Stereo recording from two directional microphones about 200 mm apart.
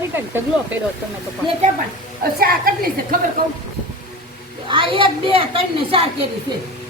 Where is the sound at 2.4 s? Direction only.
50° right (ahead or behind).